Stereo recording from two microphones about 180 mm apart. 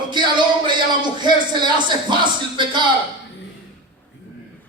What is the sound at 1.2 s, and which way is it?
Speech, 25° right (ahead or behind).